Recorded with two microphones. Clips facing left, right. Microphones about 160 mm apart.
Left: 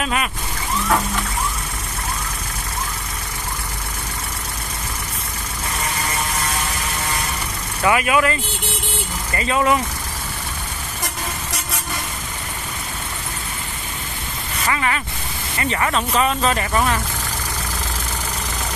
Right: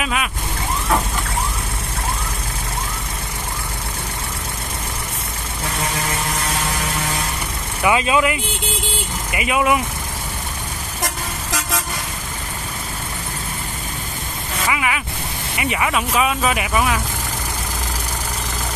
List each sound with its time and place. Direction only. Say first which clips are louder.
0.0 s speech: left 1 dB; centre (ahead or behind)
7.8 s speech: even; 20° right (ahead or behind)
14.7 s speech: left 1 dB; 10° right (ahead or behind)